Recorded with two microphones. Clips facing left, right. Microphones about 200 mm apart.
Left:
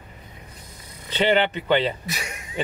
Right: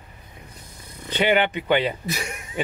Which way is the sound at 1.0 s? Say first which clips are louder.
Even; 10° right (ahead or behind).